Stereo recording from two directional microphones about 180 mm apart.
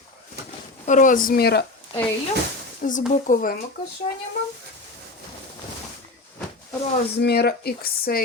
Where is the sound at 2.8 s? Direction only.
45° left (ahead or behind).